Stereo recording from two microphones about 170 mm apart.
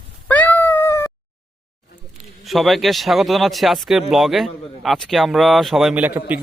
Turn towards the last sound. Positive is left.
turn(degrees=-10)  # may be behind; listen again after turning